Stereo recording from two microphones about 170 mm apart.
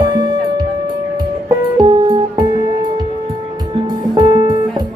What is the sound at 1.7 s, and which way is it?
Music, 25° right (ahead or behind).